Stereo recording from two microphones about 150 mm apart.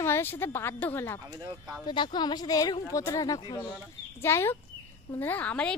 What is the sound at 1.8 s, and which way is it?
Speech, 30° left (ahead or behind).